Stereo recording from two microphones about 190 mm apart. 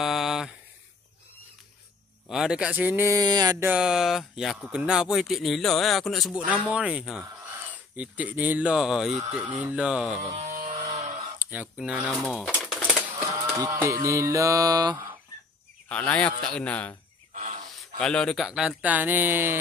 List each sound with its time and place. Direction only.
0.0 s a sound: centre (ahead or behind)
2.2 s speech: centre (ahead or behind)
10.3 s vehicle: 40° right (ahead or behind)
10.7 s music: 30° right (ahead or behind)
11.3 s speech: 10° right (ahead or behind)
11.9 s speech: 5° left (ahead or behind)
12.6 s typewriter: centre (ahead or behind)
13.6 s mantra: 15° right (ahead or behind)
15.9 s a man's voice: 5° left (ahead or behind)
17.3 s a sound: 40° right (ahead or behind)
17.7 s speech: 5° left (ahead or behind)